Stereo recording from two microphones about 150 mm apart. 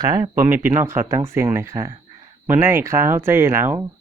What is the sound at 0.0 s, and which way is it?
Speech, 25° right (ahead or behind).